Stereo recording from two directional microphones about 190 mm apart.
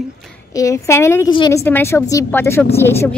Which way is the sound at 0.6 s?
15° left (ahead or behind).